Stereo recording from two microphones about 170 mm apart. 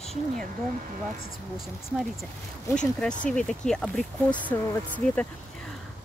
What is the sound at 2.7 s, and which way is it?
Speech, 5° left (ahead or behind).